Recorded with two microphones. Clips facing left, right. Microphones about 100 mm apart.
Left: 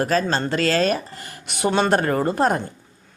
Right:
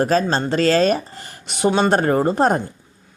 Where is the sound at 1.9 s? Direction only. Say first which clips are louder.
Right 3 dB; 25° right (ahead or behind).